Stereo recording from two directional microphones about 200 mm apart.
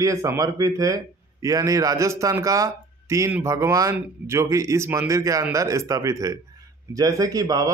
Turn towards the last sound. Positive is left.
turn(degrees=-15)  # may be behind; listen again after turning